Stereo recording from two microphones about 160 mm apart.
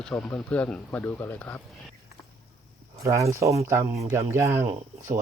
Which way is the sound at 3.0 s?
20° right (ahead or behind).